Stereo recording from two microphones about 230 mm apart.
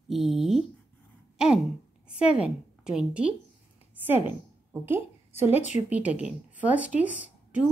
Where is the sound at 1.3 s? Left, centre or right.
Centre.